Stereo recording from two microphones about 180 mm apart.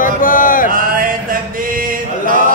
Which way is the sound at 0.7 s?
50° right (ahead or behind).